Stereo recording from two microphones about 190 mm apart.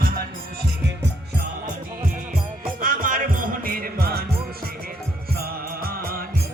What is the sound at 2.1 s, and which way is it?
Music, 45° right (ahead or behind).